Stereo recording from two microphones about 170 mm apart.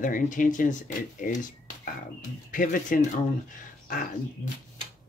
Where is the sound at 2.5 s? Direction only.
50° left (ahead or behind).